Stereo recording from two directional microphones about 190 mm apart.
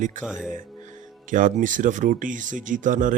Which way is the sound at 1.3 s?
45° right (ahead or behind).